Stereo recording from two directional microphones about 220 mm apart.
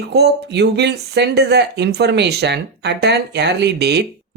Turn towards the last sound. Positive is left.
turn(degrees=-50)  # may be behind; listen again after turning